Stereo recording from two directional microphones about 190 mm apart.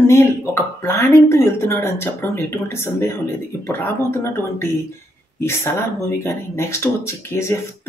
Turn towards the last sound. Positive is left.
turn(degrees=15)  # may be behind; listen again after turning